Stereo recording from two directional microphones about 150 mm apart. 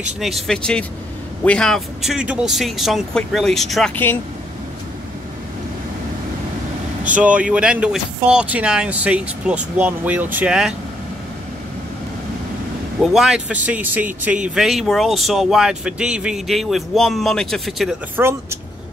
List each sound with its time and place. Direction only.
0.2 s speech: centre (ahead or behind)
3.9 s speech: 15° left (ahead or behind)
7.2 s speech: 10° right (ahead or behind)
13.0 s speech: 5° right (ahead or behind)
18.1 s speech: 15° right (ahead or behind)